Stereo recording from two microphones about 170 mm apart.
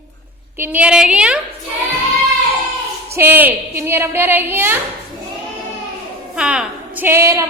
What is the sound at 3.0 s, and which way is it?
A woman's voice, 15° right (ahead or behind).